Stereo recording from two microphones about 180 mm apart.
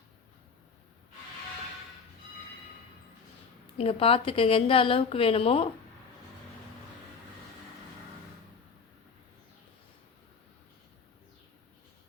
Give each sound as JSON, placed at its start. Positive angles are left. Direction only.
{"t": 3.8, "sound": "a woman's voice", "side_deg": 30}